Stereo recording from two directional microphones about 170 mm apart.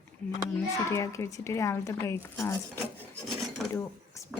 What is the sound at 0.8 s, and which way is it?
Speech, 15° left (ahead or behind).